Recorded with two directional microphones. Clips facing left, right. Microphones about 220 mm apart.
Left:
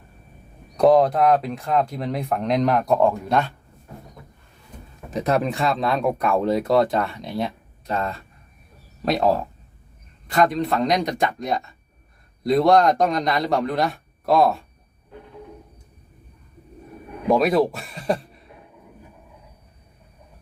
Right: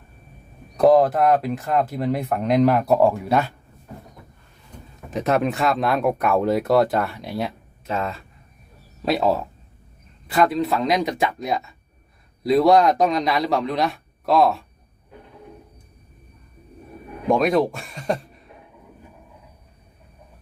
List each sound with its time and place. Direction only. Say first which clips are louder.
0.8 s speech: even; centre (ahead or behind)
5.1 s speech: right 1 dB; centre (ahead or behind)
17.2 s speech: even; 5° left (ahead or behind)